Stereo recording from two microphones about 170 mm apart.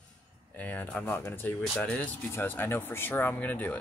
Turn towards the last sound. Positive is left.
turn(degrees=10)  # may be behind; listen again after turning